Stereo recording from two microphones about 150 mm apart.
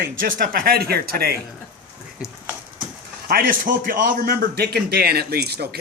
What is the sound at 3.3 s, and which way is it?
A man's voice, 70° right (ahead or behind).